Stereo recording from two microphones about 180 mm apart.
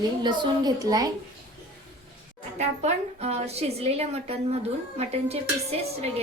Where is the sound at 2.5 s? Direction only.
40° right (ahead or behind).